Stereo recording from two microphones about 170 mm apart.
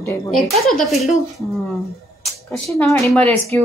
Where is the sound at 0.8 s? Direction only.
Centre (ahead or behind).